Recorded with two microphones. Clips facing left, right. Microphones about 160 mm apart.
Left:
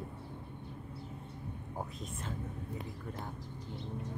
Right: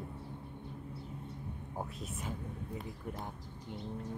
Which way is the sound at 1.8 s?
10° right (ahead or behind).